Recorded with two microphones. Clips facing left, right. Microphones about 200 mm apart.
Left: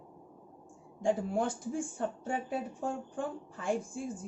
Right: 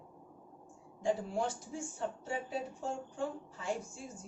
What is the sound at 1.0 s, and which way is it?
Speech, 55° left (ahead or behind).